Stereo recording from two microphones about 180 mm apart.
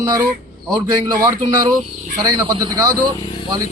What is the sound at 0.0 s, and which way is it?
A man's voice, 20° right (ahead or behind).